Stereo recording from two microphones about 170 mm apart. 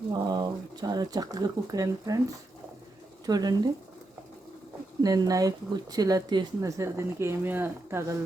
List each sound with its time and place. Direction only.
0.1 s speech: 25° right (ahead or behind)
3.2 s speech: 25° right (ahead or behind)
5.0 s speech: 20° right (ahead or behind)